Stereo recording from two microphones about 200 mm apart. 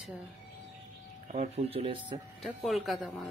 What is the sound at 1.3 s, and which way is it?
Speech, 35° right (ahead or behind).